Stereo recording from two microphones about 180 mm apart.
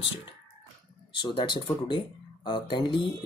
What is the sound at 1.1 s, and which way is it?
Speech, 25° left (ahead or behind).